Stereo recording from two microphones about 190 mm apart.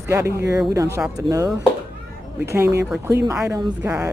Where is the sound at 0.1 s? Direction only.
15° right (ahead or behind).